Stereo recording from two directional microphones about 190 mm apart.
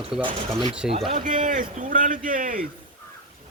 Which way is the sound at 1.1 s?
40° right (ahead or behind).